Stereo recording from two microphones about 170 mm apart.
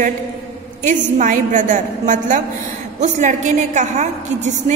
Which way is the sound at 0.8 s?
45° right (ahead or behind).